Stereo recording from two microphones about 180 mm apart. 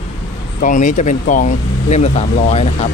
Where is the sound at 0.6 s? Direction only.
45° left (ahead or behind).